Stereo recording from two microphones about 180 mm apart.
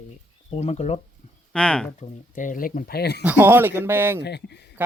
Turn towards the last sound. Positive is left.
turn(degrees=70)  # may be behind; listen again after turning